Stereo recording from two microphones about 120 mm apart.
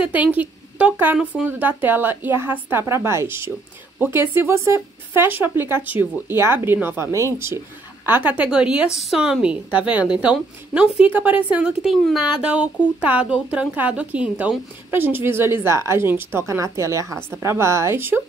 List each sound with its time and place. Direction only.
0.0 s a woman's voice: 10° right (ahead or behind)